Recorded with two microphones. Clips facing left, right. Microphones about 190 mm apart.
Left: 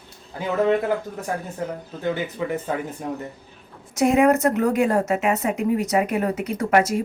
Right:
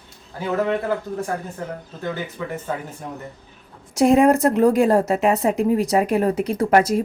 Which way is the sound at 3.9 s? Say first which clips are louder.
Right 3 dB; 30° right (ahead or behind).